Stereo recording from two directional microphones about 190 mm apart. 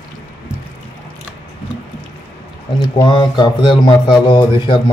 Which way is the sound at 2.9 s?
25° left (ahead or behind).